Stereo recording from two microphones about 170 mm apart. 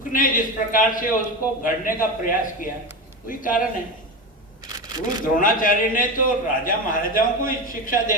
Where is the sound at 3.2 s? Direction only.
50° left (ahead or behind).